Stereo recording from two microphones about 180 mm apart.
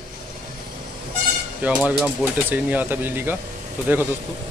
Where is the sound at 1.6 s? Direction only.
10° right (ahead or behind).